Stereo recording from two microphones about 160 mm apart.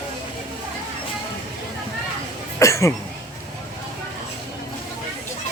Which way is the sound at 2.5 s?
20° left (ahead or behind).